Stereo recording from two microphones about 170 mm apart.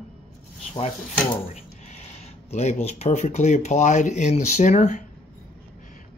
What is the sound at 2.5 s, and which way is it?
Speech, 40° left (ahead or behind).